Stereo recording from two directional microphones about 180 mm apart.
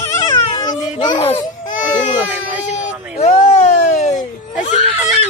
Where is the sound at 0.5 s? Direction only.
25° left (ahead or behind).